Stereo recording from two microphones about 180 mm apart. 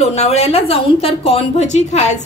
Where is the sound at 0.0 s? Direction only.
35° left (ahead or behind).